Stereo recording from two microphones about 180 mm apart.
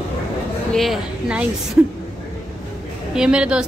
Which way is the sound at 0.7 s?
Centre (ahead or behind).